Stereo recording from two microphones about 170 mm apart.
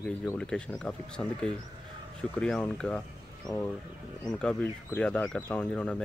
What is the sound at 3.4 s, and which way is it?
Speech, 20° left (ahead or behind).